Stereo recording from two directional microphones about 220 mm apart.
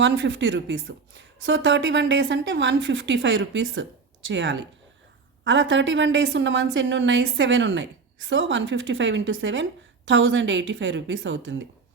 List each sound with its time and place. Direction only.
0.0 s a woman's voice: 55° right (ahead or behind)